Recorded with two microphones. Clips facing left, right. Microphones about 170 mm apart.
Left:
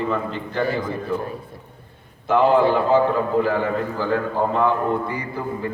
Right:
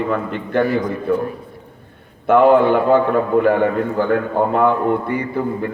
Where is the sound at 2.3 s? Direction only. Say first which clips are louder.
Right 5 dB; 60° right (ahead or behind).